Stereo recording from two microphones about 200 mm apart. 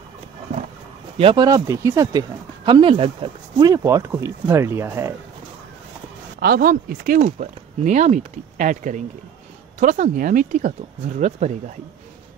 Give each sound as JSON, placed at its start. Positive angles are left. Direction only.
{"t": 1.1, "sound": "speech", "side_deg": -25}
{"t": 6.4, "sound": "speech", "side_deg": -45}